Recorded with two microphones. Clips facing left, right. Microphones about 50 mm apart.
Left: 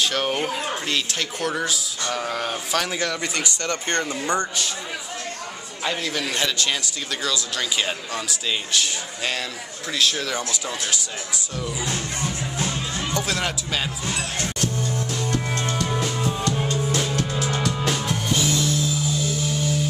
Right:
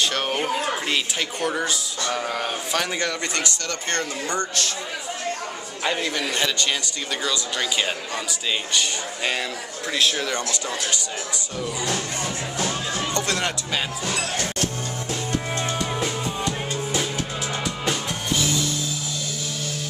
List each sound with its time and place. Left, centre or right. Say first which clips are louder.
0.0 s speech: left 1 dB; centre
3.6 s speech: left 2 dB; left
5.9 s a man's voice: right 1 dB; centre
10.3 s speech: right 1 dB; centre
13.1 s speech: left 1 dB; centre
14.0 s music: right 1 dB; right
15.1 s music: right 2 dB; centre
16.1 s music: left 2 dB; centre